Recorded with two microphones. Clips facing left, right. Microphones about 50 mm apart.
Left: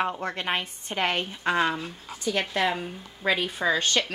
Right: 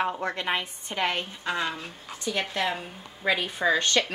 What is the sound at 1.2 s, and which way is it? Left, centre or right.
Speech, left.